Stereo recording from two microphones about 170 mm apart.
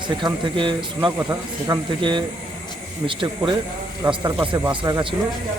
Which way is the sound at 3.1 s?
30° right (ahead or behind).